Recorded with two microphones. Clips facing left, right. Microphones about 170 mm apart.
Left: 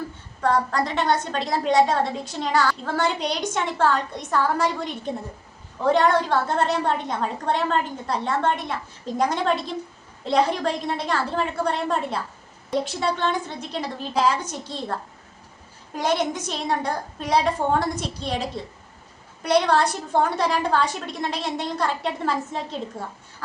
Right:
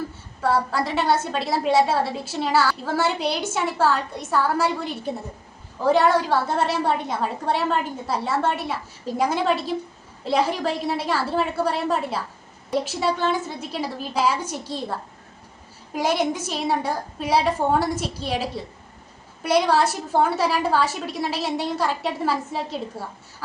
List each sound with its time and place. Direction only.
0.4 s a woman's voice: 5° right (ahead or behind)